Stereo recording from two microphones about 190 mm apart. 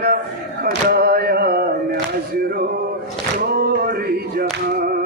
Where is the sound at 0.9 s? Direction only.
55° right (ahead or behind).